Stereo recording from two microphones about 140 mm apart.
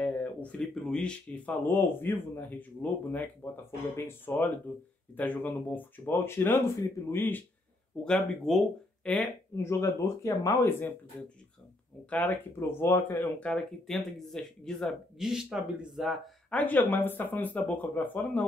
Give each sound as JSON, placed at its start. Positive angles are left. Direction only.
{"t": 0.0, "sound": "speech", "side_deg": 10}
{"t": 8.0, "sound": "speech", "side_deg": 5}
{"t": 12.1, "sound": "speech", "side_deg": 10}
{"t": 16.5, "sound": "speech", "side_deg": 10}